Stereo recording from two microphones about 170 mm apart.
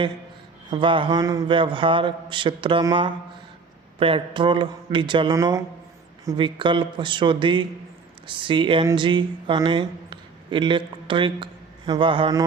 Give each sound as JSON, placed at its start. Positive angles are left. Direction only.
{"t": 0.7, "sound": "speech", "side_deg": -30}